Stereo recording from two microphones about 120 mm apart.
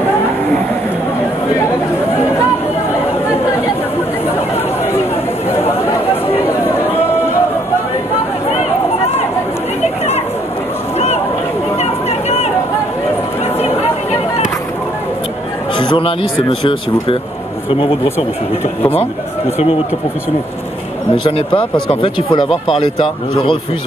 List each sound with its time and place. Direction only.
11.8 s a sound: 60° left (ahead or behind)
15.8 s speech: 45° left (ahead or behind)
21.3 s speech: 50° left (ahead or behind)